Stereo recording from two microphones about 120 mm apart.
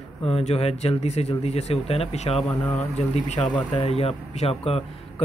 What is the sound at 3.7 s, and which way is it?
Speech, 55° left (ahead or behind).